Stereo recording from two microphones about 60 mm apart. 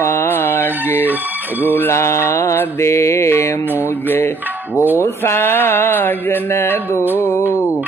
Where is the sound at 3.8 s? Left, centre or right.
Left.